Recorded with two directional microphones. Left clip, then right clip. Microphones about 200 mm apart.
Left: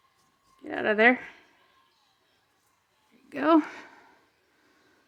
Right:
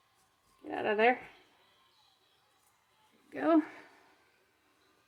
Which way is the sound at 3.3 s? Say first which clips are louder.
Left 6 dB; 35° left (ahead or behind).